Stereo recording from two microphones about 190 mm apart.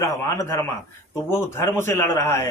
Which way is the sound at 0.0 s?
15° left (ahead or behind).